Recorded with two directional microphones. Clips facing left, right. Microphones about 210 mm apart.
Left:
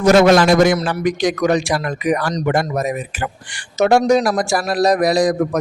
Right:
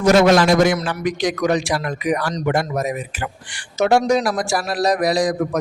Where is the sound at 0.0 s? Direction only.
55° left (ahead or behind).